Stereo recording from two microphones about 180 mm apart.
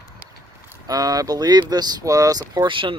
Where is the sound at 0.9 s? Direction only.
20° right (ahead or behind).